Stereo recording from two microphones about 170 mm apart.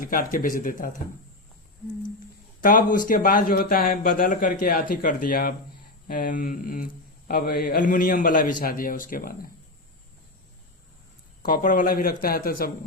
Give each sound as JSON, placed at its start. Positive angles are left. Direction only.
{"t": 0.0, "sound": "speech", "side_deg": 55}
{"t": 2.6, "sound": "speech", "side_deg": 50}
{"t": 11.4, "sound": "speech", "side_deg": 50}